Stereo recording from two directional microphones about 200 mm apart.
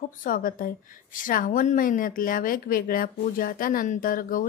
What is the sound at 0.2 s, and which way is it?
A woman's voice, 45° left (ahead or behind).